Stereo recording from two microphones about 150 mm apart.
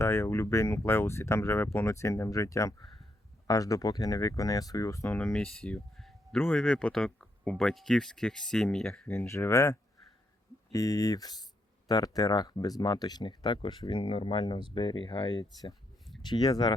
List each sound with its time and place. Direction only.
0.0 s speech: 20° left (ahead or behind)
5.1 s speech: 5° left (ahead or behind)
8.9 s speech: 15° left (ahead or behind)